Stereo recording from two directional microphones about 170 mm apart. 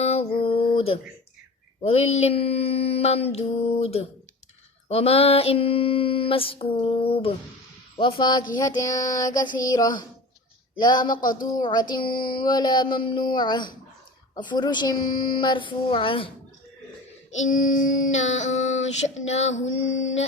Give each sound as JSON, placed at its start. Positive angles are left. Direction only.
{"t": 0.0, "sound": "a sound", "side_deg": 35}
{"t": 1.8, "sound": "a woman's voice", "side_deg": 35}
{"t": 11.2, "sound": "child singing", "side_deg": 55}
{"t": 11.5, "sound": "a woman's voice", "side_deg": 25}
{"t": 12.0, "sound": "a sound", "side_deg": 60}
{"t": 12.4, "sound": "a woman's voice", "side_deg": 25}
{"t": 17.5, "sound": "child singing", "side_deg": 50}
{"t": 19.6, "sound": "female singing", "side_deg": 90}